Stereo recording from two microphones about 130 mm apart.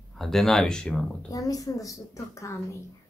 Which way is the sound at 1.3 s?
25° left (ahead or behind).